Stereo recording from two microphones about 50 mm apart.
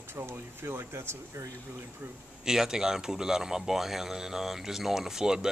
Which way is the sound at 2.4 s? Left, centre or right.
Centre.